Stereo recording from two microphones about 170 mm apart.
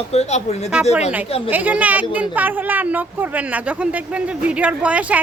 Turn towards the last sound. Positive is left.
turn(degrees=-10)  # may be behind; listen again after turning